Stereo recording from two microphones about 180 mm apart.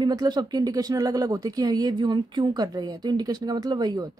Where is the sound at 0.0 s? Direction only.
20° right (ahead or behind).